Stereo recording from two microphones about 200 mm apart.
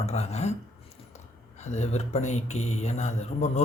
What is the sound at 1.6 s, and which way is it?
Speech, 35° left (ahead or behind).